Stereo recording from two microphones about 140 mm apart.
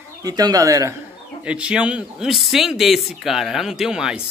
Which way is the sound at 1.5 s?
10° right (ahead or behind).